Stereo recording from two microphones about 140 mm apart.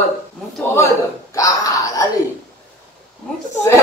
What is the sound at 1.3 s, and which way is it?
Speech, 25° left (ahead or behind).